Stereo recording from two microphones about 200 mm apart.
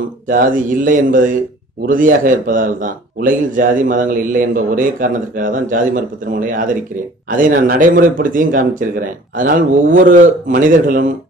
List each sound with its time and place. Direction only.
0.3 s a man's voice: 40° right (ahead or behind)